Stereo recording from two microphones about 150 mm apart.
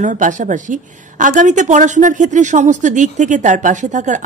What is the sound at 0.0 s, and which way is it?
A woman's voice, 55° right (ahead or behind).